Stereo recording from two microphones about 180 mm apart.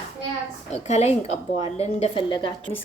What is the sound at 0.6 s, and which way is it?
A woman's voice, 40° left (ahead or behind).